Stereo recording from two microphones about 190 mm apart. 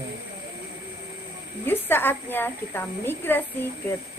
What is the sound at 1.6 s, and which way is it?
A woman's voice, 10° left (ahead or behind).